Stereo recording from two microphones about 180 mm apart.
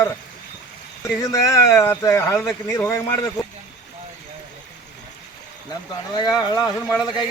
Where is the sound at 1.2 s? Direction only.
15° left (ahead or behind).